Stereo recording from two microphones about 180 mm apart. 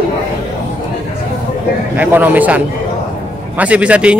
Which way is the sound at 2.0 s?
10° right (ahead or behind).